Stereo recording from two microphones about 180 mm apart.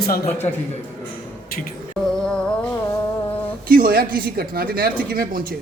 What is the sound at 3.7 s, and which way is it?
Speech, 55° right (ahead or behind).